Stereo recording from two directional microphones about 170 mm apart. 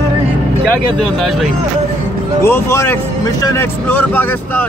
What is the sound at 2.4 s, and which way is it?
Speech, 15° left (ahead or behind).